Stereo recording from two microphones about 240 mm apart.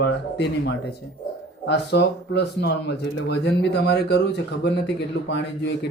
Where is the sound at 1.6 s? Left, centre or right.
Left.